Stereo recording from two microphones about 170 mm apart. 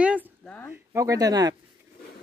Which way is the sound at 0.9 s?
20° right (ahead or behind).